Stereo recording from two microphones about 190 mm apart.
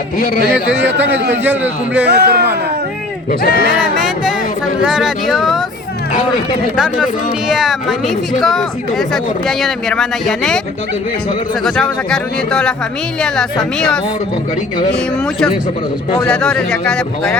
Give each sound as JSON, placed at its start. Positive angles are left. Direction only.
{"t": 0.9, "sound": "a man's voice", "side_deg": -10}
{"t": 2.0, "sound": "speech", "side_deg": -55}
{"t": 3.4, "sound": "speech", "side_deg": 50}
{"t": 3.8, "sound": "speech", "side_deg": -5}
{"t": 6.7, "sound": "speech", "side_deg": -5}
{"t": 11.6, "sound": "speech", "side_deg": 5}
{"t": 16.2, "sound": "speech", "side_deg": 5}